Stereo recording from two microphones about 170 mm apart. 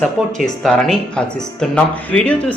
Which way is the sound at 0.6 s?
Centre (ahead or behind).